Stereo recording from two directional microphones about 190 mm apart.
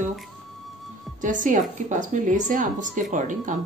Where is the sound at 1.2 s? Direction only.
45° right (ahead or behind).